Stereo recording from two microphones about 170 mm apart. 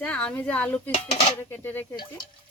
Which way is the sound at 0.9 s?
40° left (ahead or behind).